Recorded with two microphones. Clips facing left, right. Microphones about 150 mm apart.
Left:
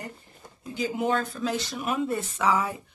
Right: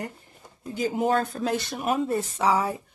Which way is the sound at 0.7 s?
45° right (ahead or behind).